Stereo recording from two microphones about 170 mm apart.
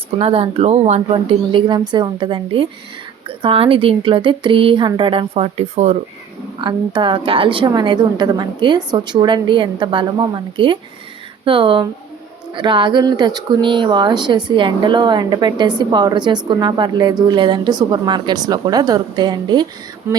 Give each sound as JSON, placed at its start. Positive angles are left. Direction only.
{"t": 0.2, "sound": "a woman's voice", "side_deg": -30}
{"t": 6.6, "sound": "a woman's voice", "side_deg": -30}
{"t": 20.1, "sound": "a sound", "side_deg": -15}